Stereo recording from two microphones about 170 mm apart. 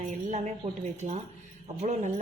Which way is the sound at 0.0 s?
45° right (ahead or behind).